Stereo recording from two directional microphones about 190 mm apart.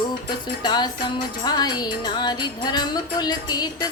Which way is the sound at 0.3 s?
20° left (ahead or behind).